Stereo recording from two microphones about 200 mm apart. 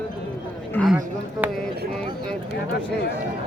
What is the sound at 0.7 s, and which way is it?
Speech, 5° left (ahead or behind).